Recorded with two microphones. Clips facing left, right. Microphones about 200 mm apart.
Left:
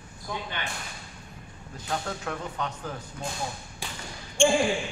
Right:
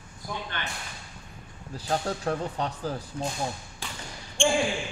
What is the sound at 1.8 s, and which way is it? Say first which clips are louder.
Speech: right 4 dB; 35° right (ahead or behind).